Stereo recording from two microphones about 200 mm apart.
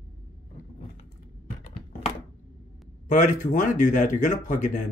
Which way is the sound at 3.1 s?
40° left (ahead or behind).